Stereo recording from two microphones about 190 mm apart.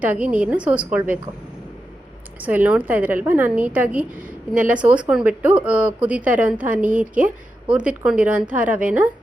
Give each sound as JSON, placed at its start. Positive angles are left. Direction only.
{"t": 0.0, "sound": "speech", "side_deg": -10}
{"t": 2.4, "sound": "speech", "side_deg": -10}
{"t": 6.9, "sound": "a woman's voice", "side_deg": -45}
{"t": 7.7, "sound": "speech", "side_deg": -5}